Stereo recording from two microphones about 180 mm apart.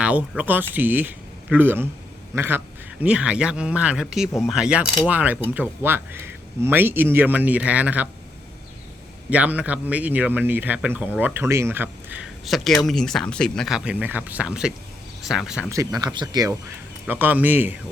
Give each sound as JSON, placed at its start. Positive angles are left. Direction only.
{"t": 0.0, "sound": "speech", "side_deg": -5}
{"t": 9.3, "sound": "speech", "side_deg": -5}
{"t": 15.7, "sound": "speech", "side_deg": -20}